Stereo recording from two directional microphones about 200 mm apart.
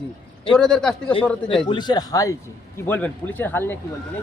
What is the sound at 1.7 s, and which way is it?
A man's voice, 20° left (ahead or behind).